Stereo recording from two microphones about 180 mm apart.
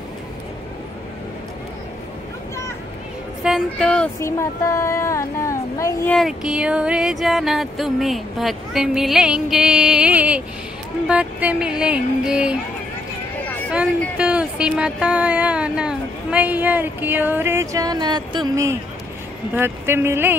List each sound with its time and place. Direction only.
3.4 s speech: centre (ahead or behind); by 6.1 s 15° left (ahead or behind)
6.1 s music: centre (ahead or behind)
13.7 s speech: 5° right (ahead or behind)